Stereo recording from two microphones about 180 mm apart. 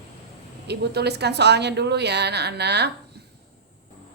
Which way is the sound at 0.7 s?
65° right (ahead or behind).